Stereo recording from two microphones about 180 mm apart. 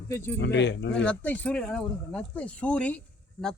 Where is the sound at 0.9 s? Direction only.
10° left (ahead or behind).